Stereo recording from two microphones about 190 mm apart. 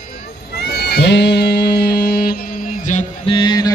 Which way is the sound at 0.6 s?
60° left (ahead or behind).